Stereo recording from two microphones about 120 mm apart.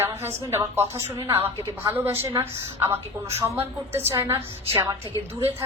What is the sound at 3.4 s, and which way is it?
A woman's voice, 25° right (ahead or behind).